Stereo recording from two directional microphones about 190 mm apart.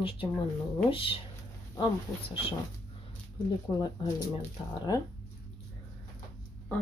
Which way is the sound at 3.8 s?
20° left (ahead or behind).